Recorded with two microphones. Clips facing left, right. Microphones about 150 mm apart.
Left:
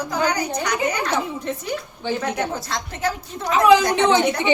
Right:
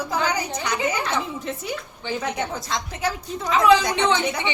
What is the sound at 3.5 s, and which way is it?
Speech, 15° left (ahead or behind).